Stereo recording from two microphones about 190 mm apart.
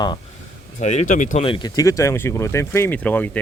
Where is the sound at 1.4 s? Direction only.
25° left (ahead or behind); by 3.4 s 10° left (ahead or behind).